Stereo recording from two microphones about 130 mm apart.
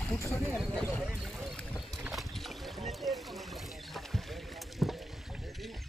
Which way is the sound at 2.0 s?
Centre (ahead or behind).